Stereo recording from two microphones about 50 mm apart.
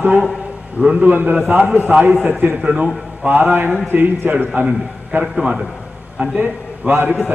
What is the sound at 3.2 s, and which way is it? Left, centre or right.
A man's voice, right.